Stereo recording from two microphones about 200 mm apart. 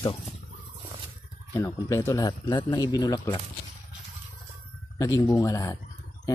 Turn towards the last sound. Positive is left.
turn(degrees=15)  # may be behind; listen again after turning